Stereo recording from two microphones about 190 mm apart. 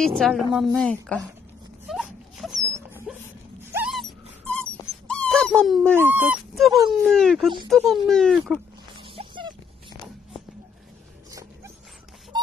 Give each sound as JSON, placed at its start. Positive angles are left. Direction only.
{"t": 0.2, "sound": "speech", "side_deg": 0}
{"t": 1.9, "sound": "dog", "side_deg": 0}
{"t": 2.6, "sound": "dog", "side_deg": -15}
{"t": 5.9, "sound": "speech", "side_deg": -10}
{"t": 8.9, "sound": "a sound", "side_deg": -30}
{"t": 11.2, "sound": "dog", "side_deg": -15}